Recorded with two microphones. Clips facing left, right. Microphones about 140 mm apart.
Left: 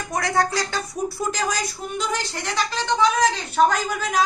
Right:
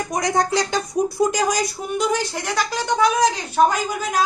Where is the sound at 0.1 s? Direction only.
20° right (ahead or behind).